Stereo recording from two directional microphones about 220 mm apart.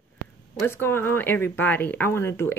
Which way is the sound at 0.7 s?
10° left (ahead or behind).